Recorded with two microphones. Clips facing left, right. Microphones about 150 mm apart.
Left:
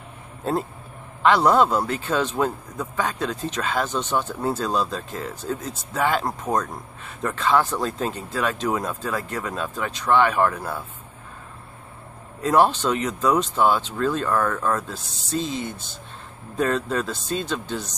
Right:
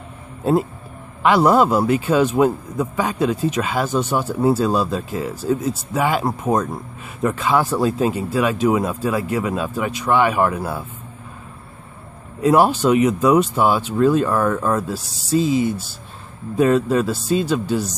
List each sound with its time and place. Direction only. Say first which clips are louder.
0.5 s speech: right 7 dB; 5° right (ahead or behind)
12.4 s speech: right 4 dB; 10° right (ahead or behind)